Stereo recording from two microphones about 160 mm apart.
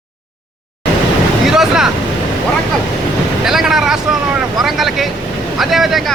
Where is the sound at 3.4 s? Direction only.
Centre (ahead or behind).